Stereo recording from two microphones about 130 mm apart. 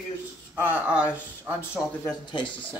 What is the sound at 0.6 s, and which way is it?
Speech, 10° right (ahead or behind).